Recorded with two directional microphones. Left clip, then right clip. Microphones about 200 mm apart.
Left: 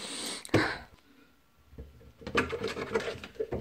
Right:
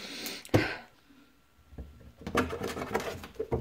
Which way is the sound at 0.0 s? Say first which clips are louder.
Left 1 dB; 5° left (ahead or behind).